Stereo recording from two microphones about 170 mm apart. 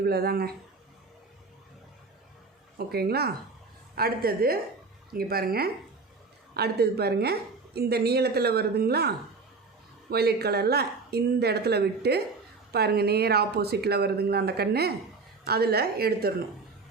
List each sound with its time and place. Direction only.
0.0 s a woman's voice: 65° right (ahead or behind)
2.7 s a woman's voice: 65° right (ahead or behind)